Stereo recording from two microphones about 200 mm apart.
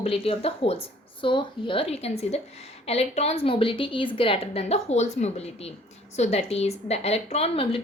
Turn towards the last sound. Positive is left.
turn(degrees=30)  # may be behind; listen again after turning